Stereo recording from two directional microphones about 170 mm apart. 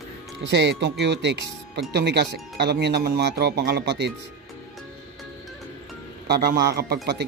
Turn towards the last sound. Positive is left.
turn(degrees=-75)  # may be behind; listen again after turning